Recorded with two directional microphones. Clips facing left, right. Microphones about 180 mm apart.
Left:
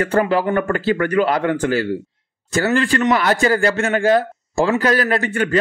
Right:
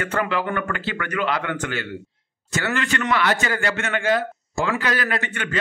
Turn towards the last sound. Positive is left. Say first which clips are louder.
# left 8 dB
turn(degrees=35)  # may be behind; listen again after turning